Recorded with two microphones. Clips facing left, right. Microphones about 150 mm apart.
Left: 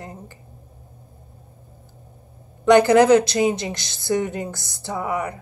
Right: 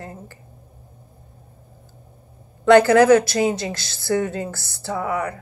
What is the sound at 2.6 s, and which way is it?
A woman's voice, 20° left (ahead or behind).